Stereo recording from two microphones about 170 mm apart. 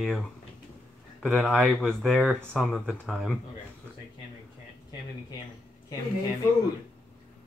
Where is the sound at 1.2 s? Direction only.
5° left (ahead or behind).